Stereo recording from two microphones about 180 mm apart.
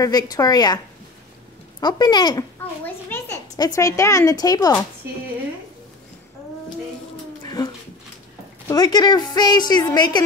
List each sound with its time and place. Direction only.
0.0 s a woman's voice: 20° left (ahead or behind)
1.8 s a woman's voice: 25° left (ahead or behind)
2.8 s a woman's voice: 15° left (ahead or behind)
7.4 s dog: 20° left (ahead or behind)
8.6 s a woman's voice: 20° left (ahead or behind)